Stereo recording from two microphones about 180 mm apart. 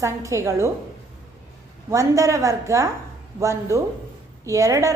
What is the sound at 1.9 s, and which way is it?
A woman's voice, 15° right (ahead or behind).